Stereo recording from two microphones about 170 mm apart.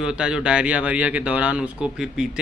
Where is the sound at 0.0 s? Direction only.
5° right (ahead or behind).